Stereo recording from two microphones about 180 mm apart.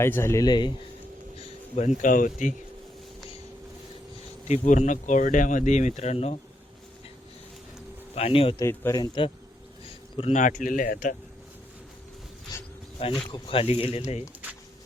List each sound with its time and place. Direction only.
0.0 s a man's voice: 15° left (ahead or behind)
1.4 s speech: 40° left (ahead or behind)
4.4 s speech: 40° left (ahead or behind)
8.1 s speech: 30° left (ahead or behind)
8.5 s speech: 15° left (ahead or behind)
10.2 s speech: 40° left (ahead or behind)
12.5 s a sound: 20° left (ahead or behind)
13.3 s speech: 30° left (ahead or behind)